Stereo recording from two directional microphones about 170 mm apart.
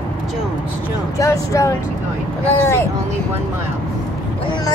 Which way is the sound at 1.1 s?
20° left (ahead or behind).